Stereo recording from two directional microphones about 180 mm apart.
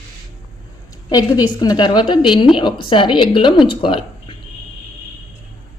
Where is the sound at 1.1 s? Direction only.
20° left (ahead or behind).